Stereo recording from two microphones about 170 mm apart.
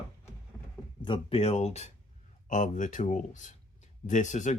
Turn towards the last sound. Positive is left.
turn(degrees=45)  # may be behind; listen again after turning